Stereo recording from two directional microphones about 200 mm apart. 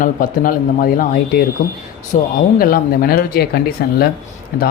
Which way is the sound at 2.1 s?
40° left (ahead or behind).